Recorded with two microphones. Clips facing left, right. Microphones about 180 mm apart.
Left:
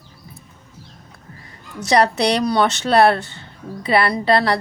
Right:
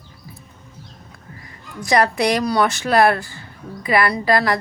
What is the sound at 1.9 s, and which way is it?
Speech, 30° left (ahead or behind).